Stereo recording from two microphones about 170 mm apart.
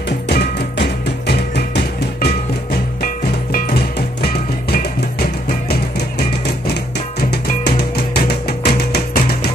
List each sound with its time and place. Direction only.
0.3 s music: 75° left (ahead or behind)